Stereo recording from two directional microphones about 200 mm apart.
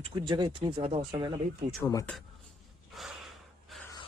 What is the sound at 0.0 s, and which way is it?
Speech, 25° right (ahead or behind).